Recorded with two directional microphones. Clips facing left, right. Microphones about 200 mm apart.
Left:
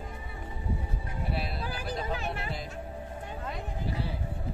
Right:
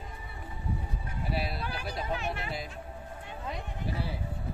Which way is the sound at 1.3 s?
5° right (ahead or behind).